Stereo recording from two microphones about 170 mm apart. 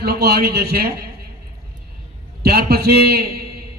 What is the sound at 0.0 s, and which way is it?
Speech, 70° right (ahead or behind).